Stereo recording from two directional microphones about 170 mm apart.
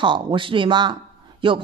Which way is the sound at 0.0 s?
30° right (ahead or behind).